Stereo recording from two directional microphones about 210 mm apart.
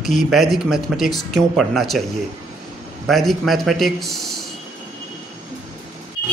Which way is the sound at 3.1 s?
Centre (ahead or behind).